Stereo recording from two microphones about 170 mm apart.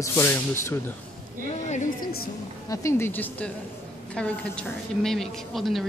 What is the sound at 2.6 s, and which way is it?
A woman's voice, 20° left (ahead or behind).